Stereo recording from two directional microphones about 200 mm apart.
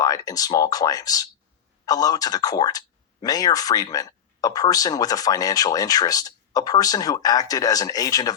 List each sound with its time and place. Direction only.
0.0 s speech: 20° left (ahead or behind)